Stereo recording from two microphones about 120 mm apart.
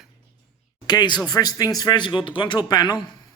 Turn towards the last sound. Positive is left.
turn(degrees=35)  # may be behind; listen again after turning